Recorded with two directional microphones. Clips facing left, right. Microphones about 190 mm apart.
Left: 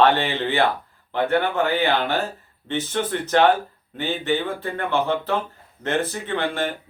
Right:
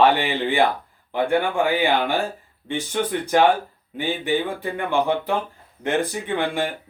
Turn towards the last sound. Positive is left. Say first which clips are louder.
# right 1 dB
turn(degrees=-10)  # may be behind; listen again after turning